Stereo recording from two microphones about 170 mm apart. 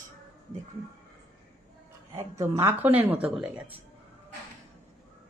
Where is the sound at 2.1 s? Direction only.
15° right (ahead or behind).